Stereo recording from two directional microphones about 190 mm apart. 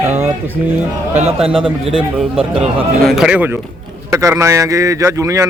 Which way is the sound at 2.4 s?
5° right (ahead or behind).